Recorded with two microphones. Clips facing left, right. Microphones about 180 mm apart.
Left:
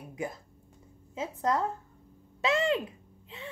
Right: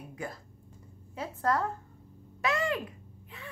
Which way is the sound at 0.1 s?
20° left (ahead or behind).